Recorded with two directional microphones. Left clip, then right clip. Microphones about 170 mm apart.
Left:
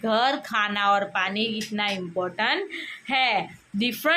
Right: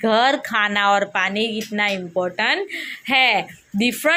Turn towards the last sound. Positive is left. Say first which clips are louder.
# right 5 dB
turn(degrees=-25)  # may be behind; listen again after turning